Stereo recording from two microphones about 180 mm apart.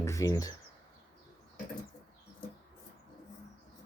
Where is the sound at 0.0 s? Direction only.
20° left (ahead or behind).